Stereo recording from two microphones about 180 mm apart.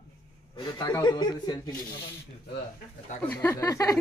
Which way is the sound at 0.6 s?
25° left (ahead or behind).